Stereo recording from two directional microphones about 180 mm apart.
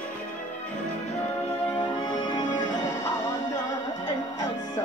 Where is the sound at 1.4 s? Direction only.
30° left (ahead or behind).